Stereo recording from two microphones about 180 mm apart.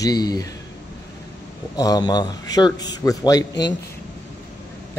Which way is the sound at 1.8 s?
20° left (ahead or behind).